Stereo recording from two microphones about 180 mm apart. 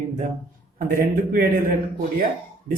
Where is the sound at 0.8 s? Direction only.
50° right (ahead or behind).